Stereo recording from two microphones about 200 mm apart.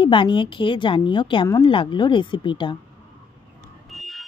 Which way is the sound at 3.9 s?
Centre (ahead or behind).